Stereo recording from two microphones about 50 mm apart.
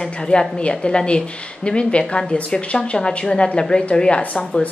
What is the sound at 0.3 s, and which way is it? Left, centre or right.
A woman's voice, left.